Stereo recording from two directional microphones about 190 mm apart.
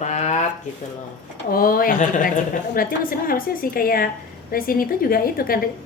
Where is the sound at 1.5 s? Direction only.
50° left (ahead or behind).